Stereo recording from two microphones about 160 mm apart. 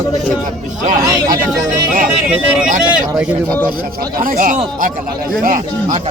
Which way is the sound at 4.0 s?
60° right (ahead or behind).